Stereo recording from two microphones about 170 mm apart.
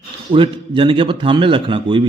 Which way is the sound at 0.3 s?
30° right (ahead or behind).